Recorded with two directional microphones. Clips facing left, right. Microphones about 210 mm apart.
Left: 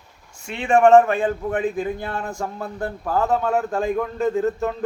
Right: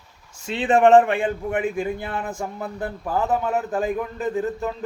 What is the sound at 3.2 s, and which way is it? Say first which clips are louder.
Speech: left 2 dB; 20° right (ahead or behind).